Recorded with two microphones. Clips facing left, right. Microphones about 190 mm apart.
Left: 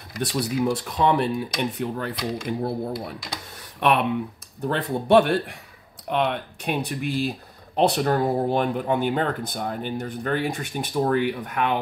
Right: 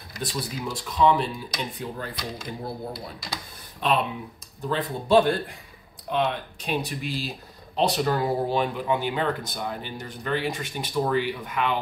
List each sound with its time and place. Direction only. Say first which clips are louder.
0.2 s speech: left 7 dB; 65° left (ahead or behind)